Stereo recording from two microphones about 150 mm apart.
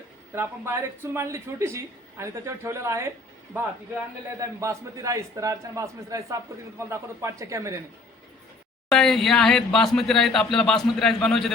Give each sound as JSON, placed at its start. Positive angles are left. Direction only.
{"t": 0.3, "sound": "speech", "side_deg": -15}
{"t": 4.4, "sound": "a man's voice", "side_deg": -20}
{"t": 8.9, "sound": "speech", "side_deg": 5}